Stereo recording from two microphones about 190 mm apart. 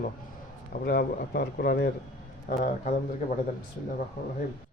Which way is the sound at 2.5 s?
40° left (ahead or behind).